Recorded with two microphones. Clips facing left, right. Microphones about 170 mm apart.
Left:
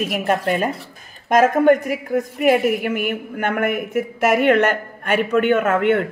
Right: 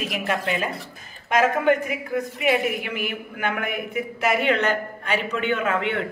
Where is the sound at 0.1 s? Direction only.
45° left (ahead or behind).